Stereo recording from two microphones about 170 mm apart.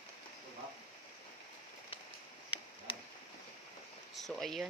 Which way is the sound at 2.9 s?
30° left (ahead or behind).